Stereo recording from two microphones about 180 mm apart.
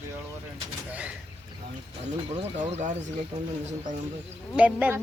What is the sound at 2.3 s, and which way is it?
Speech, 40° right (ahead or behind).